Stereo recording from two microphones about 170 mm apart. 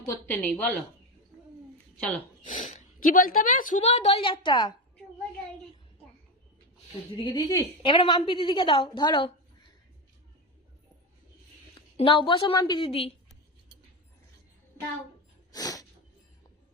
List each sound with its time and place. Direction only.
0.0 s speech: 15° left (ahead or behind)
2.0 s speech: 10° left (ahead or behind)
2.4 s speech: 50° left (ahead or behind); by 4.7 s 25° left (ahead or behind)
7.2 s a woman's voice: 25° left (ahead or behind)
11.9 s a woman's voice: 30° left (ahead or behind)
15.5 s sneeze: 20° left (ahead or behind)